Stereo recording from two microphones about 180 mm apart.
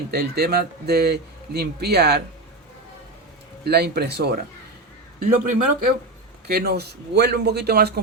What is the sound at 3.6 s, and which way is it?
Speech, 65° right (ahead or behind).